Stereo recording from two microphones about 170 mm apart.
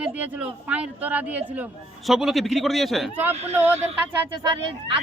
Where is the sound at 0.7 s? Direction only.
5° right (ahead or behind).